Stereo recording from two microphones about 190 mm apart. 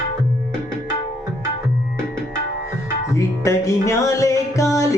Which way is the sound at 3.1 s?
15° left (ahead or behind).